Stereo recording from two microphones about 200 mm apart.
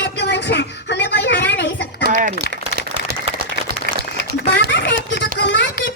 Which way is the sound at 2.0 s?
50° right (ahead or behind).